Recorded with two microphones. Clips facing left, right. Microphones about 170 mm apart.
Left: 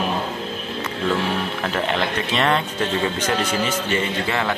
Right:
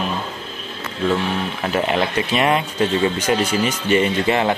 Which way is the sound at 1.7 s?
10° right (ahead or behind).